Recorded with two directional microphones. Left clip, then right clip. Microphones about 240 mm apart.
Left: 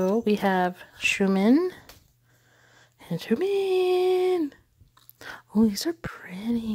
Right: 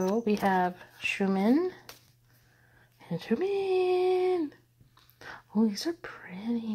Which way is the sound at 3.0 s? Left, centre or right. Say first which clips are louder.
Left 4 dB; left.